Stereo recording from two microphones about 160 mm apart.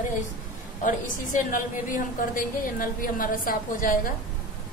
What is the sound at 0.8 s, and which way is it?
A woman's voice, 55° left (ahead or behind).